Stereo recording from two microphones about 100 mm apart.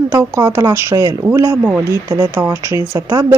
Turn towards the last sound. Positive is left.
turn(degrees=-35)  # may be behind; listen again after turning